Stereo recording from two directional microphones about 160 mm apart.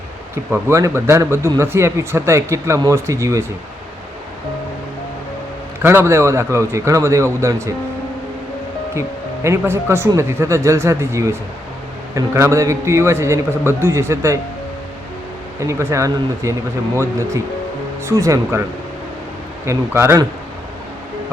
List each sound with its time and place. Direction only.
0.5 s speech: 15° right (ahead or behind)
5.8 s speech: 15° right (ahead or behind)
9.0 s speech: 15° right (ahead or behind)
15.6 s speech: 20° right (ahead or behind)
19.6 s speech: 15° right (ahead or behind)